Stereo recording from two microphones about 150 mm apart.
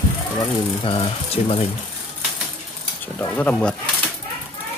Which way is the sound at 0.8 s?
40° left (ahead or behind).